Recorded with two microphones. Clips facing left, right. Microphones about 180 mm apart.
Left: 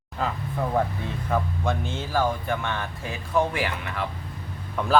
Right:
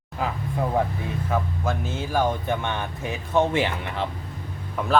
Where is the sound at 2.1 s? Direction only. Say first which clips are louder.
Right 1 dB; 20° right (ahead or behind).